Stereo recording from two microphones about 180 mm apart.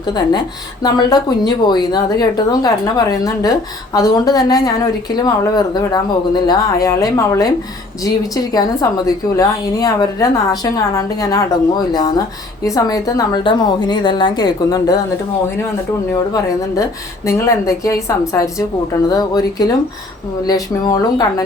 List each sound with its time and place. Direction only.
0.0 s a woman's voice: 25° left (ahead or behind)
16.3 s a woman's voice: 15° left (ahead or behind)